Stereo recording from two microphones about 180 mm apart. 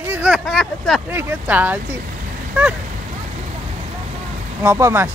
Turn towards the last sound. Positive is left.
turn(degrees=-15)  # may be behind; listen again after turning